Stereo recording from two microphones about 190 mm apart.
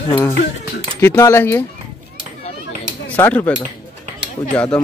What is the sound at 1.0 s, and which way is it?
Speech, 15° left (ahead or behind).